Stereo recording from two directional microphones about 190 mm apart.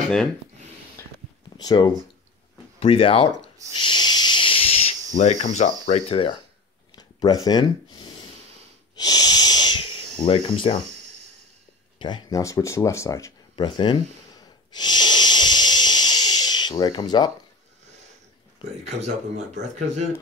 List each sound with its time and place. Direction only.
1.6 s speech: 20° left (ahead or behind)
3.8 s snake: 25° left (ahead or behind)
7.0 s a sound: 20° left (ahead or behind)
8.9 s wheeze: 20° left (ahead or behind)
10.2 s speech: 30° left (ahead or behind)
12.0 s speech: 20° left (ahead or behind)
14.7 s wheeze: 20° left (ahead or behind)
18.9 s speech: 35° right (ahead or behind)